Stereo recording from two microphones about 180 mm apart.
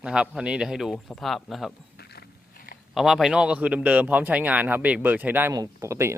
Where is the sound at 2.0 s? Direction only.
60° left (ahead or behind).